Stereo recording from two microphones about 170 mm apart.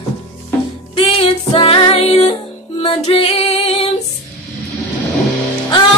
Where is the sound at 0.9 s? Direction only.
35° left (ahead or behind).